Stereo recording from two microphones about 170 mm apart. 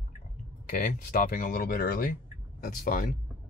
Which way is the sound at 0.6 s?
55° left (ahead or behind).